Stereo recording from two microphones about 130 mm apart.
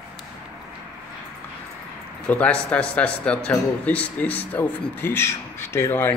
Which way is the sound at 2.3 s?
10° left (ahead or behind).